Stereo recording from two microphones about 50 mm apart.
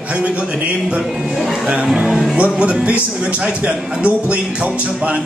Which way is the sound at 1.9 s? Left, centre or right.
Centre.